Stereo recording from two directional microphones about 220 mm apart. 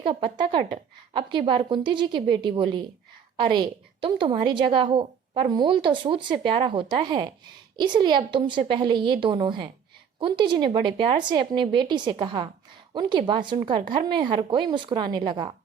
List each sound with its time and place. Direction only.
0.0 s a woman's voice: 25° right (ahead or behind)